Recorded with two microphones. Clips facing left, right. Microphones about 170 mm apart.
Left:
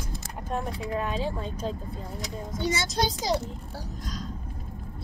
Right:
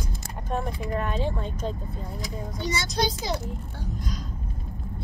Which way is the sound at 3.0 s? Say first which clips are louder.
Left 1 dB; 35° left (ahead or behind).